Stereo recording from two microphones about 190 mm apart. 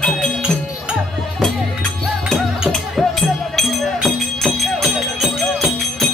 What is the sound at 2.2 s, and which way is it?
Music, centre (ahead or behind).